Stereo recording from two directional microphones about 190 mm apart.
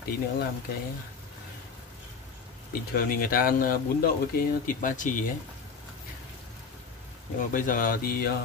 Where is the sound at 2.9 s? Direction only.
50° left (ahead or behind).